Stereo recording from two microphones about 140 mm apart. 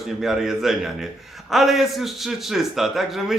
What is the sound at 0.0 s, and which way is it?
A man's voice, centre (ahead or behind).